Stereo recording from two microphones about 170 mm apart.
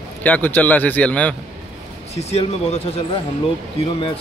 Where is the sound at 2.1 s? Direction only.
40° left (ahead or behind).